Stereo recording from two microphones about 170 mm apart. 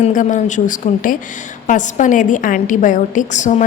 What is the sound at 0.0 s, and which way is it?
A woman's voice, 50° left (ahead or behind).